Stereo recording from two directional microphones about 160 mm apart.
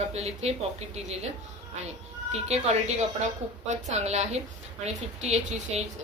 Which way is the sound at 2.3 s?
45° right (ahead or behind).